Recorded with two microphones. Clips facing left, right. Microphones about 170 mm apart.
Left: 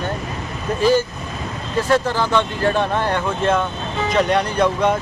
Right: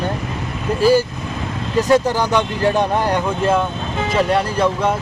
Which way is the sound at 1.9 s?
15° right (ahead or behind).